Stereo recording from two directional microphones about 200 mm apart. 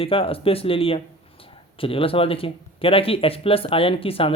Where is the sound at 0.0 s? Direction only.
30° left (ahead or behind).